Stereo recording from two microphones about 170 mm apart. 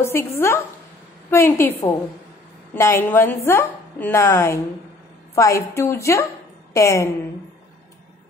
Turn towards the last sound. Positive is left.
turn(degrees=20)  # may be behind; listen again after turning